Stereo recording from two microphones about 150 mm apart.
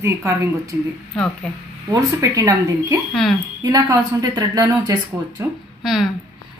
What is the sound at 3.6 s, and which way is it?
Speech, 25° right (ahead or behind).